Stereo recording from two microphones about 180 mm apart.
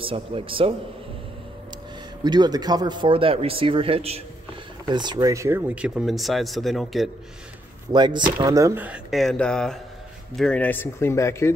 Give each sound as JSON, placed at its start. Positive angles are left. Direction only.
{"t": 0.0, "sound": "speech", "side_deg": -30}
{"t": 2.2, "sound": "speech", "side_deg": -25}
{"t": 7.9, "sound": "speech", "side_deg": -25}